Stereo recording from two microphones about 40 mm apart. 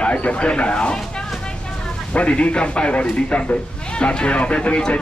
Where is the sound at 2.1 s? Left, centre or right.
Left.